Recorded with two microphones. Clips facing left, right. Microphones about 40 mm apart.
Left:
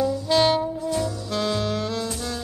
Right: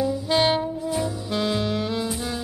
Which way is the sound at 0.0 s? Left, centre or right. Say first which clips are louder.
Left 1 dB; centre.